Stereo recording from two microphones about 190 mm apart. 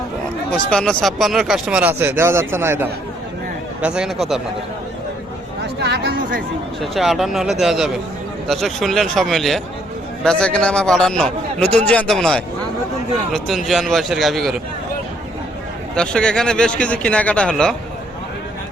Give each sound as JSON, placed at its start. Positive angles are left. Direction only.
{"t": 0.5, "sound": "a man's voice", "side_deg": 5}
{"t": 5.8, "sound": "speech", "side_deg": -60}
{"t": 6.9, "sound": "a man's voice", "side_deg": 0}
{"t": 16.0, "sound": "a man's voice", "side_deg": 5}